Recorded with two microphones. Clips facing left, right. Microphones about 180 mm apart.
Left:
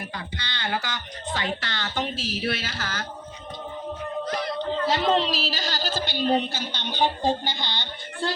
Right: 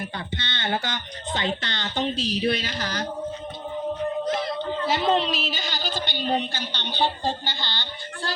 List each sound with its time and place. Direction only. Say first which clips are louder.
0.3 s speech: right 2 dB; 25° right (ahead or behind)
4.3 s a sound: right 2 dB; 25° right (ahead or behind)
4.9 s a woman's voice: right 1 dB; centre (ahead or behind); by 8.3 s 20° left (ahead or behind)